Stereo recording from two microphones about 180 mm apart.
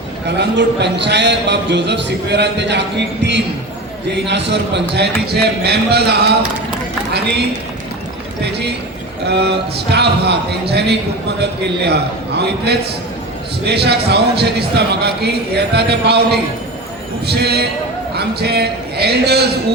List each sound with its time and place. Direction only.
0.3 s a man's voice: 70° right (ahead or behind)
8.4 s a man's voice: 65° right (ahead or behind)